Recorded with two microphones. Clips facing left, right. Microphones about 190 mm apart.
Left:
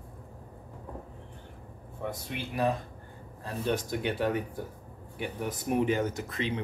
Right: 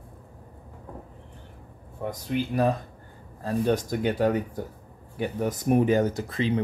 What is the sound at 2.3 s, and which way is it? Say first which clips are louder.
Speech: right 6 dB; 40° right (ahead or behind).